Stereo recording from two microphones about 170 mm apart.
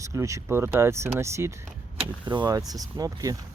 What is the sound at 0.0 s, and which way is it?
Speech, 20° right (ahead or behind).